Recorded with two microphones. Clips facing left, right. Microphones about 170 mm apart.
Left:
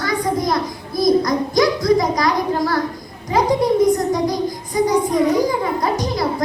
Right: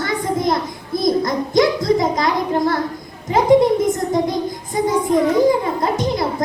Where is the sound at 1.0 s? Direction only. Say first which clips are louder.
Left 2 dB; 25° right (ahead or behind).